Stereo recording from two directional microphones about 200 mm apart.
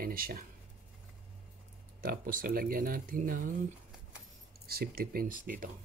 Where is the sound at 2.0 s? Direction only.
45° right (ahead or behind).